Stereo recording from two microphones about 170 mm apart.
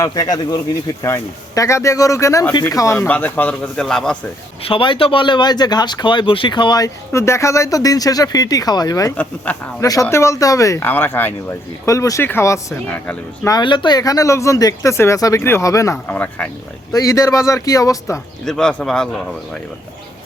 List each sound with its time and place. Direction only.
0.0 s speech: 20° left (ahead or behind); by 4.2 s 5° left (ahead or behind)
4.6 s speech: 30° left (ahead or behind)
9.5 s speech: 10° left (ahead or behind)
9.8 s speech: 20° left (ahead or behind)
13.5 s speech: 25° left (ahead or behind)
18.4 s a man's voice: 5° left (ahead or behind)